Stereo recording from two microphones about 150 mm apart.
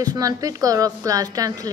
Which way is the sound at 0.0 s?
25° right (ahead or behind).